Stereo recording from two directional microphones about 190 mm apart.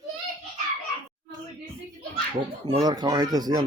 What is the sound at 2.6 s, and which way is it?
Speech, 20° right (ahead or behind).